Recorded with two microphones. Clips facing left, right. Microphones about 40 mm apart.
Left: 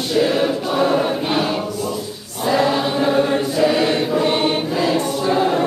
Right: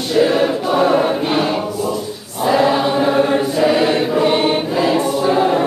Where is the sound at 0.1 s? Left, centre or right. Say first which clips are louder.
Right 3 dB; centre.